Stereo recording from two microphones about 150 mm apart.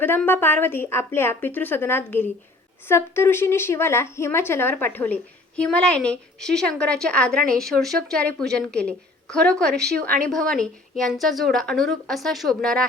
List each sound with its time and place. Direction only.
0.0 s a woman's voice: 15° left (ahead or behind)
9.7 s a woman's voice: 90° right
10.0 s a woman's voice: 10° left (ahead or behind)